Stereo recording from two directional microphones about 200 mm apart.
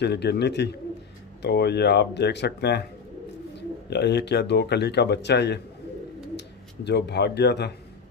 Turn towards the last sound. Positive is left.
turn(degrees=55)  # may be behind; listen again after turning